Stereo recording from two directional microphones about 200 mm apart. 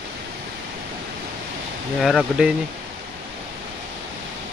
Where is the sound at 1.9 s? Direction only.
Centre (ahead or behind).